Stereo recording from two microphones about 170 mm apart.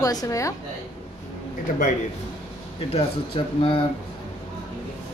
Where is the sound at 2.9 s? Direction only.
30° left (ahead or behind).